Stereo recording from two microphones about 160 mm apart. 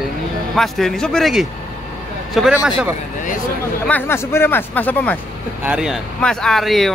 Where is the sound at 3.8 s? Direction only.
10° left (ahead or behind).